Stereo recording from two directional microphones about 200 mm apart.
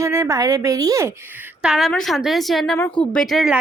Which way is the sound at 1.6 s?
Centre (ahead or behind).